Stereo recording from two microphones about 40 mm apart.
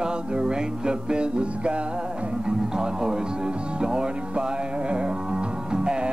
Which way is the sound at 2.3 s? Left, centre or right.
Centre.